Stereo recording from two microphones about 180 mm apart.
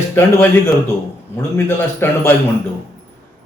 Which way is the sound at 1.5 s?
10° left (ahead or behind).